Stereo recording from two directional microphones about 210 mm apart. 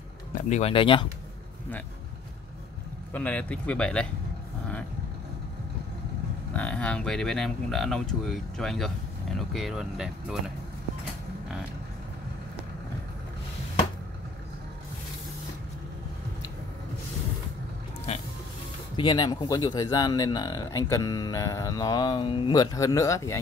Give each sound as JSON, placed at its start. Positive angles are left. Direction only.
{"t": 0.3, "sound": "speech", "side_deg": 30}
{"t": 3.1, "sound": "speech", "side_deg": 5}
{"t": 6.5, "sound": "speech", "side_deg": 5}
{"t": 18.1, "sound": "music", "side_deg": 30}
{"t": 18.9, "sound": "speech", "side_deg": 20}